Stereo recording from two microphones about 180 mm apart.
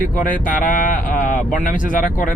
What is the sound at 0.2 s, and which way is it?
Speech, 45° left (ahead or behind).